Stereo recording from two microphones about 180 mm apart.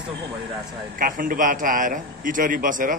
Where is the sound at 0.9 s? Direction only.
50° right (ahead or behind).